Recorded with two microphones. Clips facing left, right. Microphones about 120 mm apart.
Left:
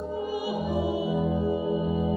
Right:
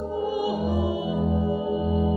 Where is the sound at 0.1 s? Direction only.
20° right (ahead or behind).